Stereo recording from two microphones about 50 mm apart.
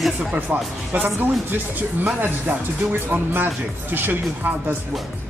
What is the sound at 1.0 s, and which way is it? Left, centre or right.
Speech, right.